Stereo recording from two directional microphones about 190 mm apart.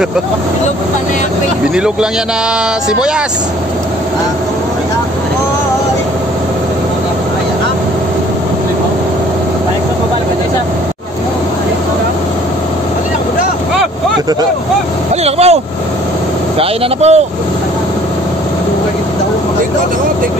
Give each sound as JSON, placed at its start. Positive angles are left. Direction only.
{"t": 15.2, "sound": "speech", "side_deg": -35}